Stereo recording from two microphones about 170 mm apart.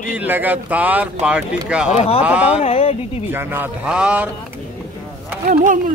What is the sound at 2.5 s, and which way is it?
Speech, 35° left (ahead or behind).